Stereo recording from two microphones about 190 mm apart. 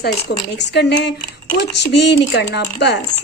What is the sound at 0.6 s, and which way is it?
A woman's voice, 65° left (ahead or behind).